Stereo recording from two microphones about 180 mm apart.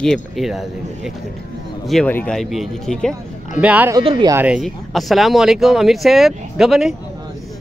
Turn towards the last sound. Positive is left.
turn(degrees=0)  # may be behind; listen again after turning